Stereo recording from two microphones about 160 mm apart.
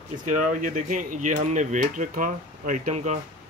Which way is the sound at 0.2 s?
55° right (ahead or behind).